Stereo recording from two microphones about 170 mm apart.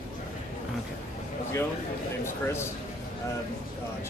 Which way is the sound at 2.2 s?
15° left (ahead or behind).